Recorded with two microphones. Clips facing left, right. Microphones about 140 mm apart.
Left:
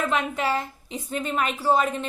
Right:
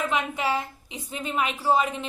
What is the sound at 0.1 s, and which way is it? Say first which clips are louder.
A woman's voice: left 1 dB; 10° right (ahead or behind).